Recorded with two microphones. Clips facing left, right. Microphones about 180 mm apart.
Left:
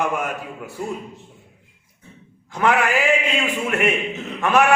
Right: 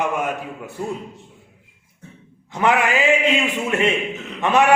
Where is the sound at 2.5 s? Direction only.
20° right (ahead or behind).